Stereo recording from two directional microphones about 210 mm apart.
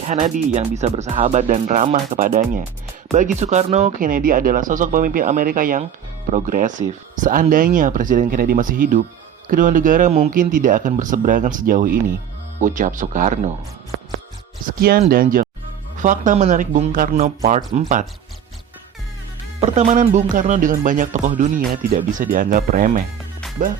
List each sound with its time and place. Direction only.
0.0 s speech: 35° right (ahead or behind)
14.8 s speech: 45° right (ahead or behind)
19.5 s speech: 30° right (ahead or behind)